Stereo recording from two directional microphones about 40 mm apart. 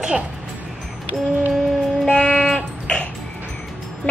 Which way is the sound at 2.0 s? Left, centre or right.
Centre.